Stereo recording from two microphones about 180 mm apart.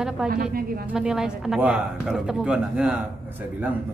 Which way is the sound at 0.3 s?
55° right (ahead or behind).